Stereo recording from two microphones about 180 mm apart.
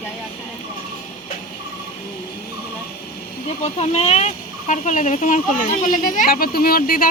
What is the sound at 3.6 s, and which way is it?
Speech, 35° left (ahead or behind).